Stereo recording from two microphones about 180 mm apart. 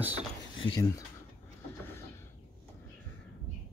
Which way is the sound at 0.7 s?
25° left (ahead or behind).